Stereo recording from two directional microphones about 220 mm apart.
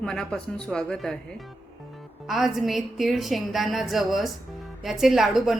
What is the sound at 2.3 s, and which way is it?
A woman's voice, centre (ahead or behind).